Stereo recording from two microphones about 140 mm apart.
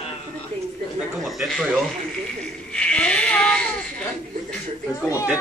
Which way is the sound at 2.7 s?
10° left (ahead or behind).